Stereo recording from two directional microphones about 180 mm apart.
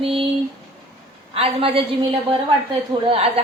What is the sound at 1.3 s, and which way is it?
A woman's voice, 30° right (ahead or behind).